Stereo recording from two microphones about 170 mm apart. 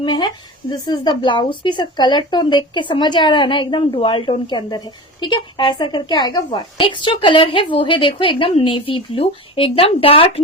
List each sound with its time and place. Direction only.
0.0 s speech: 25° left (ahead or behind)